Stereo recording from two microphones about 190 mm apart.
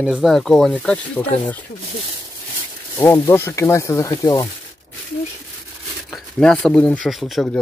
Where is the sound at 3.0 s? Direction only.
10° left (ahead or behind).